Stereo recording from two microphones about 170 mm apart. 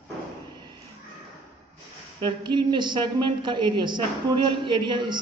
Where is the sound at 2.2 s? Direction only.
25° right (ahead or behind).